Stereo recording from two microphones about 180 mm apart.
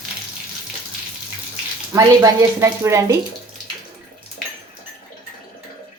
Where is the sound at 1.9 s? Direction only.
15° right (ahead or behind).